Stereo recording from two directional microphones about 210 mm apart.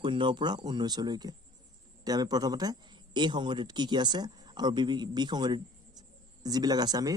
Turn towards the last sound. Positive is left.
turn(degrees=-20)  # may be behind; listen again after turning